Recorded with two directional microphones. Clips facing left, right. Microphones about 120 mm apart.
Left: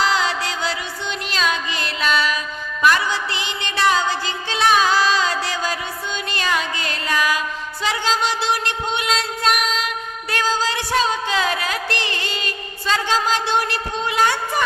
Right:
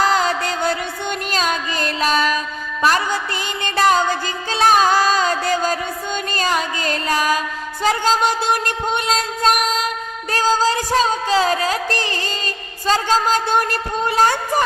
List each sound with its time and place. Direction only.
0.0 s music: 45° right (ahead or behind)
12.9 s a woman's voice: 40° right (ahead or behind)